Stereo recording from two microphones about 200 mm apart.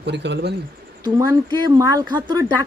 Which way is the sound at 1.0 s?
20° right (ahead or behind).